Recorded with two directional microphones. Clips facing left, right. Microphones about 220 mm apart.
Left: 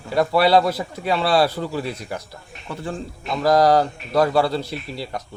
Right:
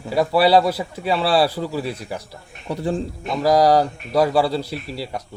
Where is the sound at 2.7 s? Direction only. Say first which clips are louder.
Right 6 dB; 35° right (ahead or behind).